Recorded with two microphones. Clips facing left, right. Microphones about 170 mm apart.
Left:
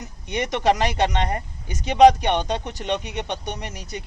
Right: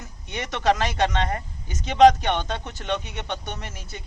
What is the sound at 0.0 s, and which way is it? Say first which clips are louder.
Speech: left 6 dB; 15° left (ahead or behind).